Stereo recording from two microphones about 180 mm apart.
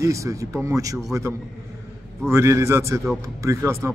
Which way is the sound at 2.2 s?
15° right (ahead or behind).